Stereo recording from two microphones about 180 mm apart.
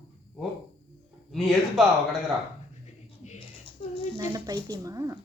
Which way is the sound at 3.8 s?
40° left (ahead or behind).